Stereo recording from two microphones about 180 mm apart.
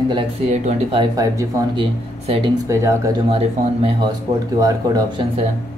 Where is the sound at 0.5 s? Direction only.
40° right (ahead or behind).